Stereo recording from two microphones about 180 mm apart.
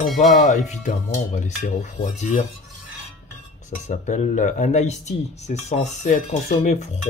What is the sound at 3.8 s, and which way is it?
Speech, 40° left (ahead or behind).